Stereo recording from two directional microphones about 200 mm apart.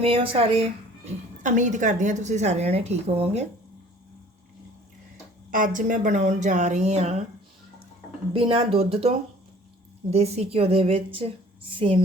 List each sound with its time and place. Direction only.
0.0 s a woman's voice: 25° right (ahead or behind)
5.5 s a woman's voice: 40° right (ahead or behind)
8.3 s a woman's voice: 30° right (ahead or behind)